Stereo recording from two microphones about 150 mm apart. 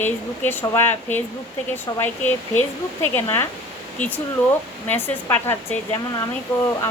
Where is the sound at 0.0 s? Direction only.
15° left (ahead or behind).